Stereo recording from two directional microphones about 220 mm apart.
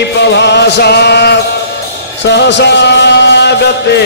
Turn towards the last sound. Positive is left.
turn(degrees=50)  # may be behind; listen again after turning